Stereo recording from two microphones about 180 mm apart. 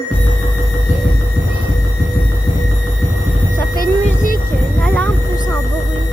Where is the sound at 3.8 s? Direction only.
50° left (ahead or behind).